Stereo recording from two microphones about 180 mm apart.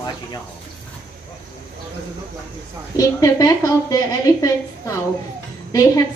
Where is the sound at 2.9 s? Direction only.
20° left (ahead or behind).